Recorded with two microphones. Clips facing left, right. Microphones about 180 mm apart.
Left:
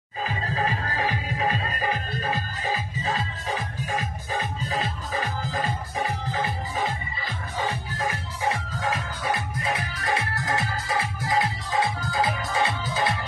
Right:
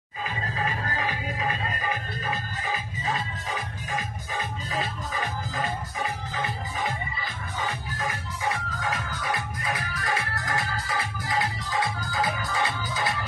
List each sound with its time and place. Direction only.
8.5 s music: 30° left (ahead or behind)